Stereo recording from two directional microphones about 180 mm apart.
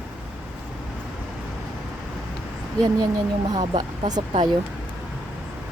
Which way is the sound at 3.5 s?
25° right (ahead or behind).